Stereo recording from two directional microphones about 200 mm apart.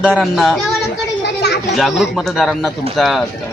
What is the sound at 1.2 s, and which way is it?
Children playing, 55° left (ahead or behind).